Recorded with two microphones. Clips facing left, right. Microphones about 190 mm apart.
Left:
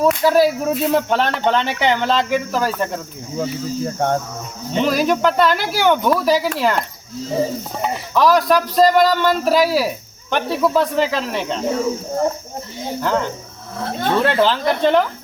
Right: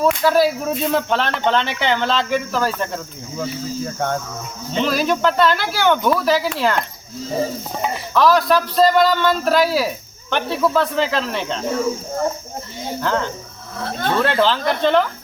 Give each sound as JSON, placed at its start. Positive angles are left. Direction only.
{"t": 0.0, "sound": "a man's voice", "side_deg": 15}
{"t": 3.9, "sound": "cricket", "side_deg": 35}
{"t": 4.7, "sound": "a man's voice", "side_deg": 15}
{"t": 8.1, "sound": "a man's voice", "side_deg": 10}
{"t": 11.7, "sound": "speech", "side_deg": 20}
{"t": 13.0, "sound": "a man's voice", "side_deg": 10}